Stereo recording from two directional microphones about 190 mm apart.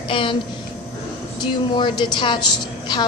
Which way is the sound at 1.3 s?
20° left (ahead or behind).